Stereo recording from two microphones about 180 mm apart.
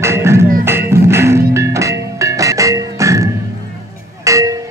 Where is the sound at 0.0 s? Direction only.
15° right (ahead or behind).